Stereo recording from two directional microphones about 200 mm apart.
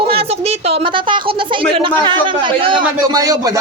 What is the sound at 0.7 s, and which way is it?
A woman's voice, 25° right (ahead or behind).